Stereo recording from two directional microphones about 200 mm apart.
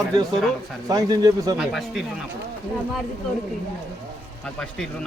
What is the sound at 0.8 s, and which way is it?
Speech, 20° right (ahead or behind).